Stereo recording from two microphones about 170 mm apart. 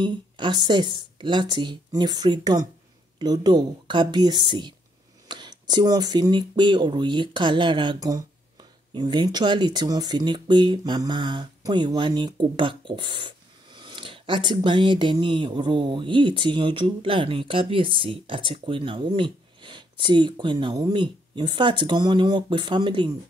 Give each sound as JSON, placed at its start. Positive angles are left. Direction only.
{"t": 0.0, "sound": "speech", "side_deg": -25}